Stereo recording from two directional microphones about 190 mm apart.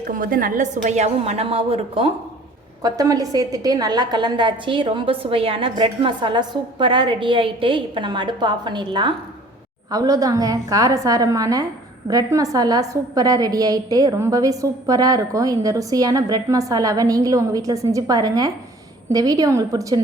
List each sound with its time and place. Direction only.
0.1 s a woman's voice: 45° right (ahead or behind); by 2.1 s 30° right (ahead or behind)
2.8 s a woman's voice: 20° right (ahead or behind)